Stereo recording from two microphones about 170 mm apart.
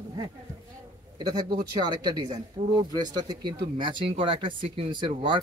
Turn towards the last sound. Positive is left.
turn(degrees=-30)  # may be behind; listen again after turning